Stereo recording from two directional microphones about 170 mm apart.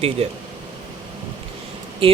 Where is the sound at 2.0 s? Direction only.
35° right (ahead or behind).